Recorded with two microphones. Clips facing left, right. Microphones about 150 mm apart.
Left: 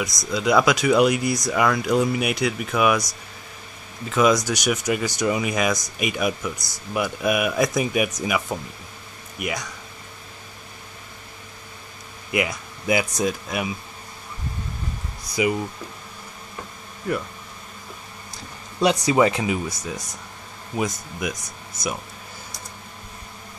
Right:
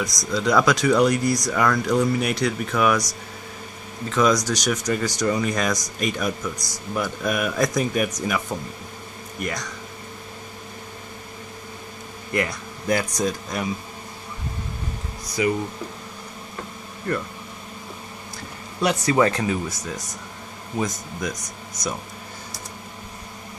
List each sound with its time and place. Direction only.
0.3 s speech: 10° left (ahead or behind)
4.1 s speech: 5° left (ahead or behind)
12.3 s speech: 10° left (ahead or behind)
15.4 s speech: 15° left (ahead or behind)
17.1 s speech: 5° left (ahead or behind)
19.0 s speech: 15° left (ahead or behind)